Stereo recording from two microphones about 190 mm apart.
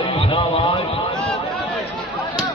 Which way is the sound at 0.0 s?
30° left (ahead or behind).